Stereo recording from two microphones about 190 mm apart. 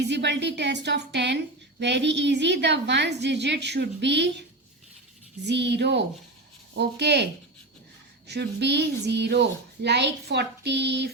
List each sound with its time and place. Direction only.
0.1 s a woman's voice: 65° right (ahead or behind)
5.5 s a woman's voice: 65° right (ahead or behind)
8.3 s a woman's voice: 65° right (ahead or behind)